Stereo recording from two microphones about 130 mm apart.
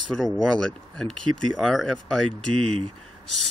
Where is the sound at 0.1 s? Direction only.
5° left (ahead or behind).